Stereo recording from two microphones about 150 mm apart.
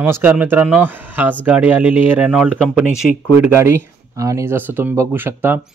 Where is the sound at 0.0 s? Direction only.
15° right (ahead or behind).